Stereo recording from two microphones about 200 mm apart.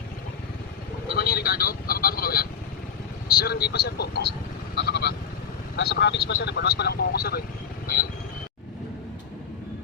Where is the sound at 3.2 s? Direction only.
50° left (ahead or behind).